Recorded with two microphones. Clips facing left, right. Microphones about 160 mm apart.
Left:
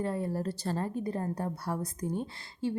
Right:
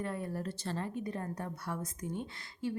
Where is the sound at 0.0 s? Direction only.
30° left (ahead or behind).